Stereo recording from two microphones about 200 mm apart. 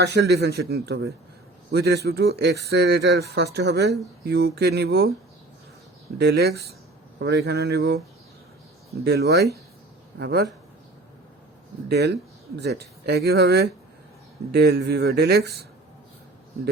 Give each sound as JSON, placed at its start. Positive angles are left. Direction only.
{"t": 0.0, "sound": "speech", "side_deg": -55}
{"t": 6.1, "sound": "speech", "side_deg": -55}
{"t": 9.0, "sound": "speech", "side_deg": -55}
{"t": 11.9, "sound": "speech", "side_deg": -55}